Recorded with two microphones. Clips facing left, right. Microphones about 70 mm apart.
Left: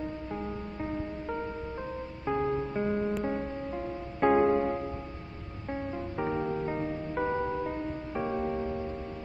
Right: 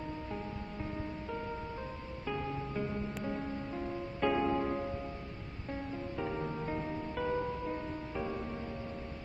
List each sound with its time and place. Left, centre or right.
2.2 s music: left
3.3 s music: left
4.2 s music: left
5.7 s music: left